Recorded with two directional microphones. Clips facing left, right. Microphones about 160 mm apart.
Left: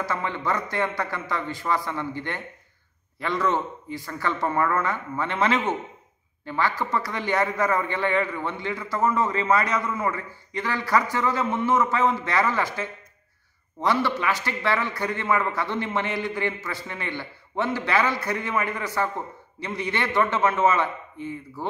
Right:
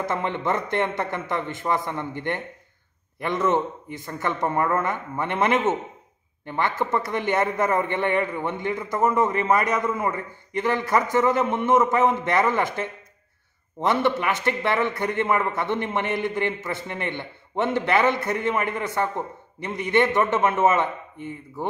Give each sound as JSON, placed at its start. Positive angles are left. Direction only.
{"t": 0.0, "sound": "a man's voice", "side_deg": -20}